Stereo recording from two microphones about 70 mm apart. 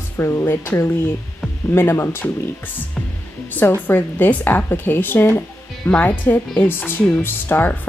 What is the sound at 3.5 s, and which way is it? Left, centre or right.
A woman's voice, left.